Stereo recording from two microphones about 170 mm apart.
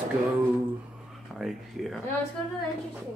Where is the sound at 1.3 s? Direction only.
Centre (ahead or behind).